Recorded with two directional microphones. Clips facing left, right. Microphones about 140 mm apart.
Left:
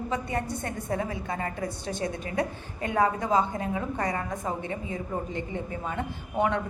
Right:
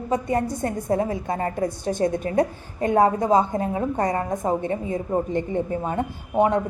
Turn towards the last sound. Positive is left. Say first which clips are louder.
# right 6 dB
turn(degrees=-40)  # may be behind; listen again after turning